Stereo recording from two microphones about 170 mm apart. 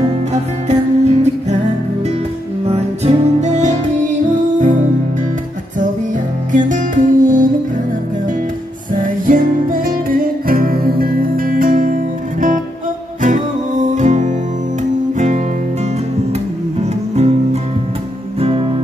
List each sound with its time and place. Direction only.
0.3 s music: 40° right (ahead or behind)
2.6 s music: 35° right (ahead or behind)
6.5 s music: 50° right (ahead or behind)
9.0 s music: 55° right (ahead or behind)
17.1 s music: 40° right (ahead or behind)